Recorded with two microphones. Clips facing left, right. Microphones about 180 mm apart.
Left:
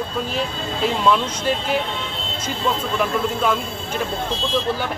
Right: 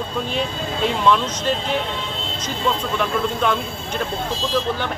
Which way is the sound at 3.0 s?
5° left (ahead or behind).